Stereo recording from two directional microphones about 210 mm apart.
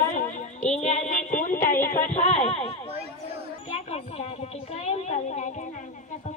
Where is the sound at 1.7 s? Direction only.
10° left (ahead or behind).